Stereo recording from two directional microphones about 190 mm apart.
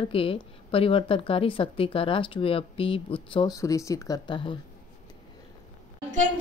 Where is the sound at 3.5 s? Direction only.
15° left (ahead or behind).